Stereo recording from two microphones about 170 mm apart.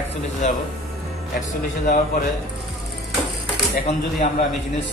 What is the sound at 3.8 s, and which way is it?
Speech, 40° left (ahead or behind).